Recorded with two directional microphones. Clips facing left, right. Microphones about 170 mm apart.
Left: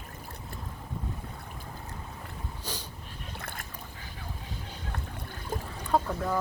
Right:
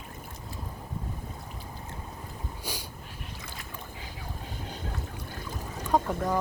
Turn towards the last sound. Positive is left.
turn(degrees=-10)  # may be behind; listen again after turning